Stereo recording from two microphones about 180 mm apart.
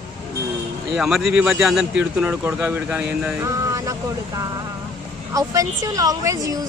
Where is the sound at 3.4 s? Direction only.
20° right (ahead or behind).